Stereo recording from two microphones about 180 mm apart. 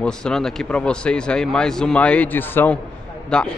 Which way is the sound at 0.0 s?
5° left (ahead or behind).